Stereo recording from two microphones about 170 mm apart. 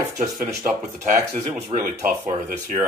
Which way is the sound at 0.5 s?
15° right (ahead or behind).